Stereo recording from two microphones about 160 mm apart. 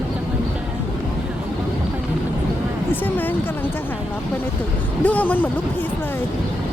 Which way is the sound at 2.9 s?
10° left (ahead or behind).